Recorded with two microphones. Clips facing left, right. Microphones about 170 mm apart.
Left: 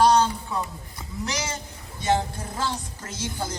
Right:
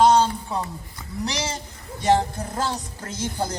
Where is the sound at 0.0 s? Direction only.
25° right (ahead or behind).